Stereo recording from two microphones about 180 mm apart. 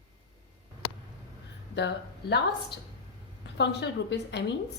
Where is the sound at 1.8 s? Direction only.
70° left (ahead or behind).